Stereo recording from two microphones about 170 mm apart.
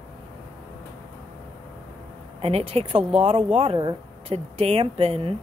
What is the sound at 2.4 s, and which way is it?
Speech, 35° right (ahead or behind).